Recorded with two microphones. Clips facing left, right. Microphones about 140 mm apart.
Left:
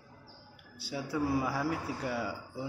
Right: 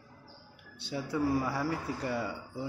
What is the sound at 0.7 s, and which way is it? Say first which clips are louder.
A man's voice: right 1 dB; 5° left (ahead or behind).